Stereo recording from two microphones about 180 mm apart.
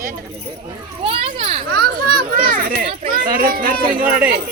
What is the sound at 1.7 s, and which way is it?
A child's voice, 60° right (ahead or behind).